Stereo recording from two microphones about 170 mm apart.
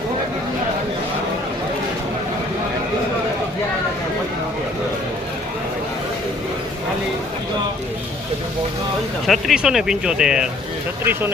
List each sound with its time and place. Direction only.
9.2 s speech: centre (ahead or behind)